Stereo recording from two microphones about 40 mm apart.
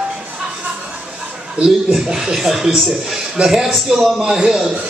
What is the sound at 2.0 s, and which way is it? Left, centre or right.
A man's voice, centre.